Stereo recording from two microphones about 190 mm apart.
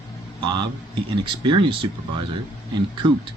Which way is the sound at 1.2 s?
25° right (ahead or behind).